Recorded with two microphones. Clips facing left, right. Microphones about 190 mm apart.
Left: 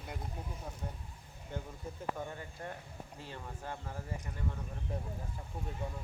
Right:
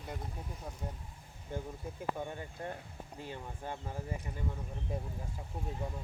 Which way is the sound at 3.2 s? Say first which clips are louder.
Right 2 dB; 15° right (ahead or behind).